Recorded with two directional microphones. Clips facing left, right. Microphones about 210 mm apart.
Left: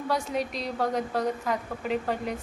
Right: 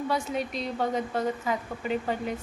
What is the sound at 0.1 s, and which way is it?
A woman's voice, centre (ahead or behind).